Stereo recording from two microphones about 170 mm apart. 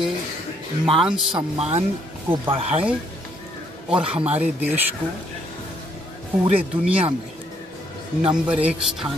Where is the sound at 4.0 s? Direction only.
5° right (ahead or behind).